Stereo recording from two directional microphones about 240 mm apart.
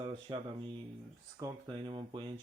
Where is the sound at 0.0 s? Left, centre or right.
Right.